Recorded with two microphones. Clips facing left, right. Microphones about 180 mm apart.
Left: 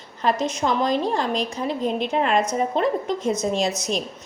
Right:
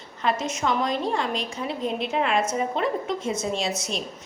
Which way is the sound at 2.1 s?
40° left (ahead or behind).